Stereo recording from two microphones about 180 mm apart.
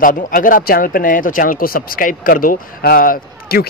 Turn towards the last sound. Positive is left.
turn(degrees=55)  # may be behind; listen again after turning